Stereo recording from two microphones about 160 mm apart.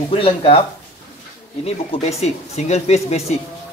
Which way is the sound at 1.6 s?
40° left (ahead or behind).